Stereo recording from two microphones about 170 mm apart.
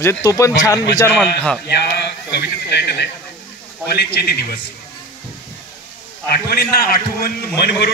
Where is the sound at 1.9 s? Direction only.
75° left (ahead or behind).